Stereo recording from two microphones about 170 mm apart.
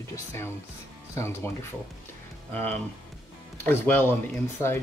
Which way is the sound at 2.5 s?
10° left (ahead or behind).